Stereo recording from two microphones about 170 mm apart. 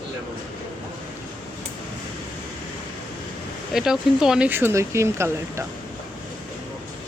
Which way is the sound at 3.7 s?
5° right (ahead or behind).